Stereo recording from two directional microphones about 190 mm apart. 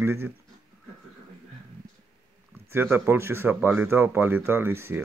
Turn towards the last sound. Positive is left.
turn(degrees=-10)  # may be behind; listen again after turning